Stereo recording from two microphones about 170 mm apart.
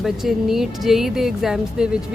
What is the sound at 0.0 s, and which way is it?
Speech, centre (ahead or behind).